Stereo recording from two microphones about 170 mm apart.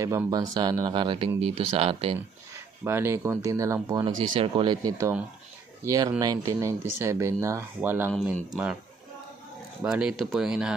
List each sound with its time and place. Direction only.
0.0 s speech: 20° right (ahead or behind); by 2.1 s 35° right (ahead or behind)
2.8 s speech: 15° right (ahead or behind)
9.8 s speech: 5° right (ahead or behind)